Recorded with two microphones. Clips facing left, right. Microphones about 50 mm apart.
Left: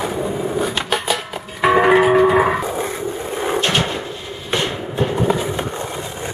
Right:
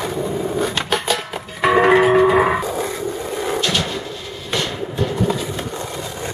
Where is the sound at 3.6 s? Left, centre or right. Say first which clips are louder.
Left 2 dB; left.